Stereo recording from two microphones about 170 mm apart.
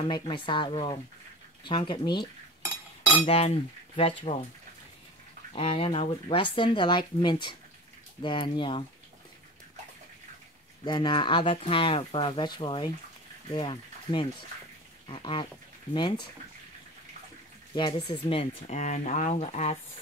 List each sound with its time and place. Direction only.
0.1 s speech: 30° left (ahead or behind)
3.3 s speech: 35° left (ahead or behind)
5.5 s speech: 35° left (ahead or behind)
10.9 s speech: 30° left (ahead or behind)
17.7 s speech: 30° left (ahead or behind)